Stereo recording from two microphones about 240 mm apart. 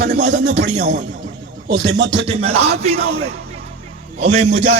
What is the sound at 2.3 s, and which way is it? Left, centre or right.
Speech, right.